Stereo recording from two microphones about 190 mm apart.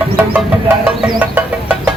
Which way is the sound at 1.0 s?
5° right (ahead or behind).